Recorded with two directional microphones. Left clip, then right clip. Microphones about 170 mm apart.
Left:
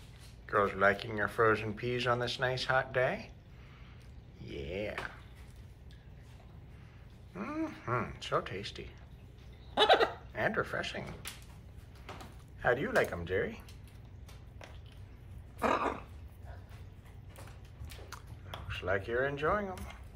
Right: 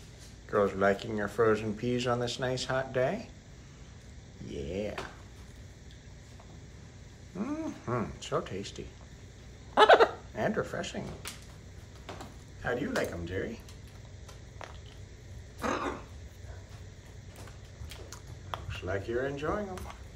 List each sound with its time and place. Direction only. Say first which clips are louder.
0.5 s speech: right 1 dB; 15° right (ahead or behind)
4.5 s a sound: right 3 dB; 15° right (ahead or behind)
7.3 s speech: right 1 dB; 15° right (ahead or behind)
9.8 s a sound: right 5 dB; 15° right (ahead or behind)
12.6 s speech: left 3 dB; centre (ahead or behind)
18.7 s speech: left 2 dB; 5° right (ahead or behind)